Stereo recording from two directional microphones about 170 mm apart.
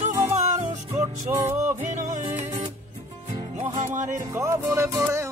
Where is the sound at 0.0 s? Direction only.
45° right (ahead or behind).